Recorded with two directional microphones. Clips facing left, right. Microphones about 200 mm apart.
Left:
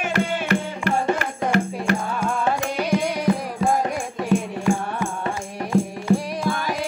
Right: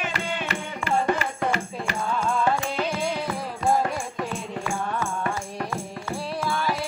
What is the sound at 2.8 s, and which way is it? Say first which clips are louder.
Music: left 4 dB; 15° left (ahead or behind).